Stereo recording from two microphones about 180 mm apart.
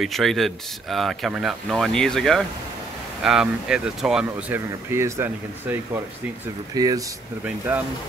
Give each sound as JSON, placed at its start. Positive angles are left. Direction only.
{"t": 0.0, "sound": "speech", "side_deg": 0}
{"t": 7.4, "sound": "speech", "side_deg": -10}